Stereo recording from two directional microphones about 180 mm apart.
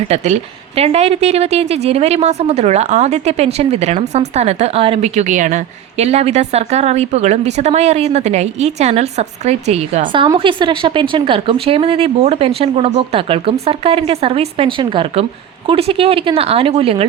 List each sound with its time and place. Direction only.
0.8 s a woman's voice: 35° right (ahead or behind)